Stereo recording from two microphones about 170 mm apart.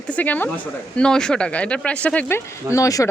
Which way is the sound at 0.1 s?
10° left (ahead or behind).